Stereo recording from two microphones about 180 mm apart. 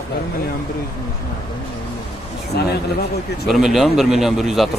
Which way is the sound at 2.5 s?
65° left (ahead or behind).